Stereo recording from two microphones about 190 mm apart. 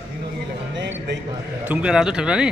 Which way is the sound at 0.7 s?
70° right (ahead or behind).